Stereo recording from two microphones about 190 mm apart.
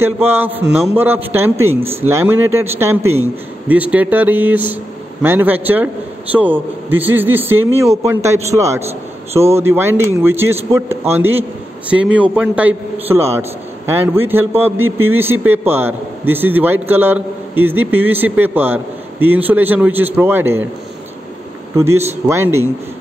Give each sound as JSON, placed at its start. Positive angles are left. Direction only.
{"t": 0.0, "sound": "a man's voice", "side_deg": -10}
{"t": 9.3, "sound": "a man's voice", "side_deg": -35}
{"t": 9.6, "sound": "a man's voice", "side_deg": -15}
{"t": 14.9, "sound": "a man's voice", "side_deg": -90}
{"t": 15.1, "sound": "a man's voice", "side_deg": -10}
{"t": 21.7, "sound": "a man's voice", "side_deg": -15}